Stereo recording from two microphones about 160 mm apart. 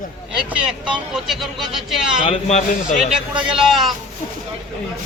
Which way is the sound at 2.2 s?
40° left (ahead or behind).